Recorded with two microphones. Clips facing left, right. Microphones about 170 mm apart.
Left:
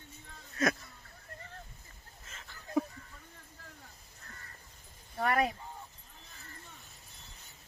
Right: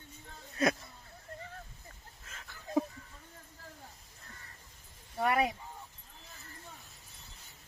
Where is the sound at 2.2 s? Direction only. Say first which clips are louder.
Right 1 dB; centre (ahead or behind).